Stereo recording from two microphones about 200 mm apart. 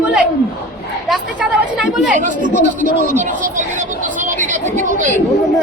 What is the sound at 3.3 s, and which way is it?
Speech, 40° right (ahead or behind).